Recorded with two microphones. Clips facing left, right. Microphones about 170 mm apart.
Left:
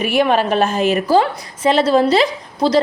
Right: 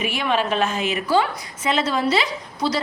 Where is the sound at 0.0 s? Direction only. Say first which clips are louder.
Left 7 dB; 45° left (ahead or behind).